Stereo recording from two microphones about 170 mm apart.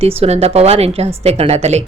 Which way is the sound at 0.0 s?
35° right (ahead or behind).